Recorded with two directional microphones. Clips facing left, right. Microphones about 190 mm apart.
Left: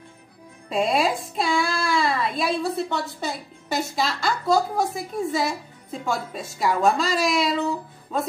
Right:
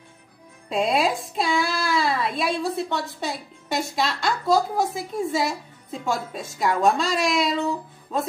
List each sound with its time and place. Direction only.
0.7 s speech: centre (ahead or behind)